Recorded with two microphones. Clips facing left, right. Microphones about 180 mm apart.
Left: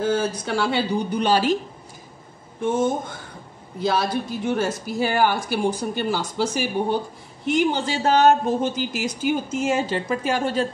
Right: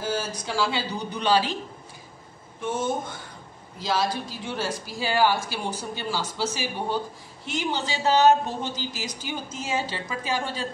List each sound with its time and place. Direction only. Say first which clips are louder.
0.0 s speech: left 7 dB; 55° left (ahead or behind)
3.8 s speech: left 4 dB; 60° left (ahead or behind)